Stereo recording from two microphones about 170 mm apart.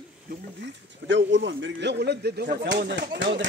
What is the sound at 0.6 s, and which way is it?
A man's voice, 90° right.